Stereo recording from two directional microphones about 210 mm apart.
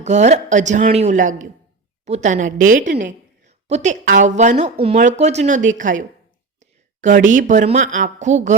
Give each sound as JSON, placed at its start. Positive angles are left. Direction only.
{"t": 0.0, "sound": "a woman's voice", "side_deg": -35}